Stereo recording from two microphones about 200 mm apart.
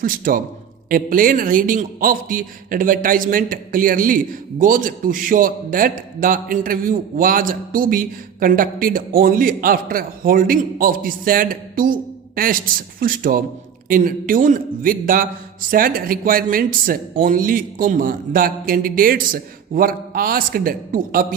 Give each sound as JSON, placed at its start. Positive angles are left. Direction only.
{"t": 0.0, "sound": "a man's voice", "side_deg": -45}